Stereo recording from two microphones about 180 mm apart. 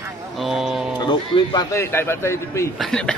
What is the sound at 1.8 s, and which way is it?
Speech, 15° left (ahead or behind).